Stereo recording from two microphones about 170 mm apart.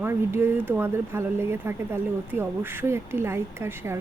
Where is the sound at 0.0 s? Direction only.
15° right (ahead or behind).